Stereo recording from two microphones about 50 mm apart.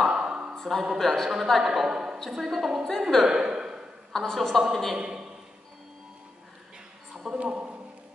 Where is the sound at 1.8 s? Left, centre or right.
Centre.